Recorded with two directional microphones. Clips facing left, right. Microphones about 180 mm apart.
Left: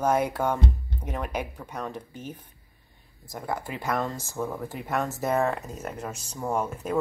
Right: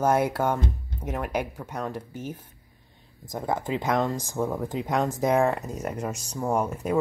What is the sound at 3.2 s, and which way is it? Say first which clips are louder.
Speech: right 4 dB; 20° right (ahead or behind).